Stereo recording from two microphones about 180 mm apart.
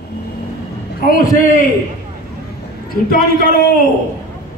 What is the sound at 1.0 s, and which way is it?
Speech, 50° left (ahead or behind).